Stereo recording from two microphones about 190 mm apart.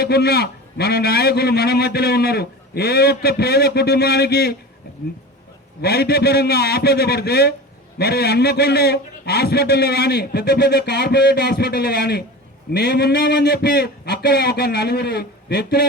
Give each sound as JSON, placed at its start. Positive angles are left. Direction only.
{"t": 0.0, "sound": "a man's voice", "side_deg": 55}
{"t": 5.8, "sound": "a man's voice", "side_deg": 55}